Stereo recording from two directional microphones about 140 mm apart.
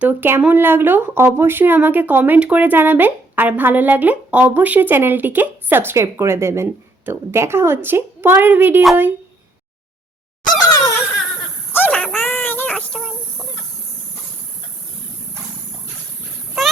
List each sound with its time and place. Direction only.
0.0 s speech: 15° right (ahead or behind)
10.6 s wail: 25° left (ahead or behind)
11.7 s a sound: 10° left (ahead or behind)
12.5 s child singing: 10° left (ahead or behind)